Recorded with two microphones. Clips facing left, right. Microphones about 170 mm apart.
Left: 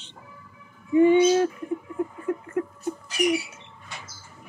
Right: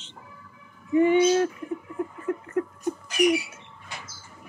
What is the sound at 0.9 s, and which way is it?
Bird, 15° left (ahead or behind).